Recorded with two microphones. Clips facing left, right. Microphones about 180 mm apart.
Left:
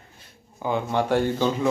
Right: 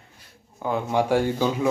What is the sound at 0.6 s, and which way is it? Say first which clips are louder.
Speech: even; centre (ahead or behind).